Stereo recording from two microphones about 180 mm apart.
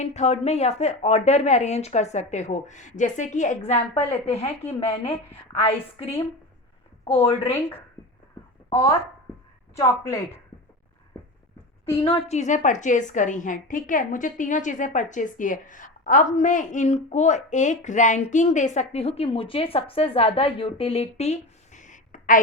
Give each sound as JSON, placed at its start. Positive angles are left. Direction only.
{"t": 0.0, "sound": "a woman's voice", "side_deg": 40}
{"t": 7.0, "sound": "speech", "side_deg": 30}
{"t": 8.7, "sound": "a woman's voice", "side_deg": 15}
{"t": 12.0, "sound": "a woman's voice", "side_deg": 35}